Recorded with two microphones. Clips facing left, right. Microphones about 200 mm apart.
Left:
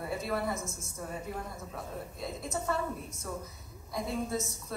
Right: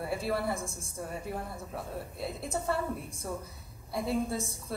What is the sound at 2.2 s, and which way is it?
A woman's voice, 30° right (ahead or behind).